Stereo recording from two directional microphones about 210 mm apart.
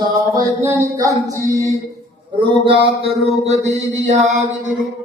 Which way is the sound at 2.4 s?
25° right (ahead or behind).